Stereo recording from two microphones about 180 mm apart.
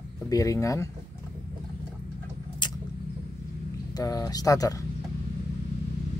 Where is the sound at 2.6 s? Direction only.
25° left (ahead or behind).